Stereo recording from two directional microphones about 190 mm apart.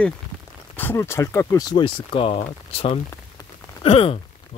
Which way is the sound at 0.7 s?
10° left (ahead or behind).